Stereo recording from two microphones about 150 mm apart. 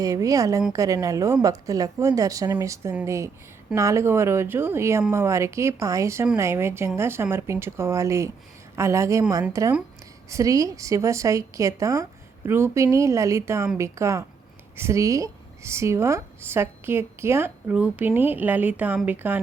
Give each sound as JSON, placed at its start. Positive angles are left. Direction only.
{"t": 0.0, "sound": "a woman's voice", "side_deg": -20}